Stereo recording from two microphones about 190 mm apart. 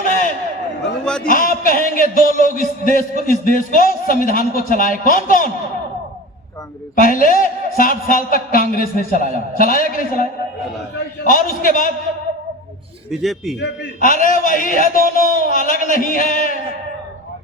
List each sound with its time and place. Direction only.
0.0 s a sound: 45° left (ahead or behind)
1.3 s a man's voice: 45° left (ahead or behind)
6.9 s a man's voice: 45° left (ahead or behind)
11.2 s a man's voice: 45° left (ahead or behind)
13.1 s a man's voice: centre (ahead or behind)
14.0 s a man's voice: 45° left (ahead or behind)